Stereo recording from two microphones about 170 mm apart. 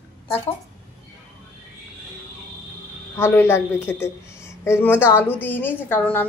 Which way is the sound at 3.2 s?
15° left (ahead or behind).